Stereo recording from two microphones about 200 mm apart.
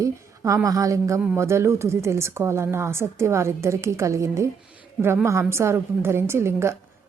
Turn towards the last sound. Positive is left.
turn(degrees=-15)  # may be behind; listen again after turning